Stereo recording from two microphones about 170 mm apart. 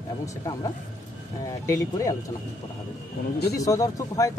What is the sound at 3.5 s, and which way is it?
Speech, 20° left (ahead or behind).